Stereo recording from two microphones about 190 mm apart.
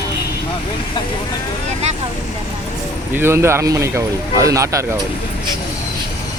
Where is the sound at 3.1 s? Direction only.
10° right (ahead or behind).